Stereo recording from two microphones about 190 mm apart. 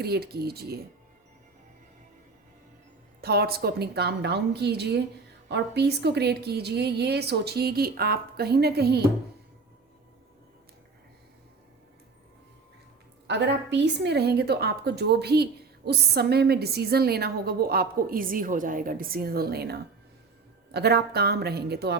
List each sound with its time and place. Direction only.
0.0 s a woman's voice: 55° right (ahead or behind)
3.2 s a woman's voice: 55° right (ahead or behind)
13.2 s a woman's voice: 65° right (ahead or behind)